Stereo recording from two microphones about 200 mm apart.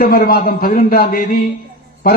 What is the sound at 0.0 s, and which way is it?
A man's voice, 45° left (ahead or behind).